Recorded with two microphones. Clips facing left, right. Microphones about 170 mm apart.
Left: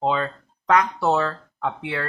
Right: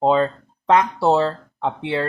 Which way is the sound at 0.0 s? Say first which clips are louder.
Right 6 dB; 35° right (ahead or behind).